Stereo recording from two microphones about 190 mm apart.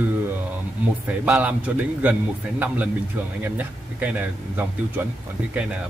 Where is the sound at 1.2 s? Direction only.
5° right (ahead or behind).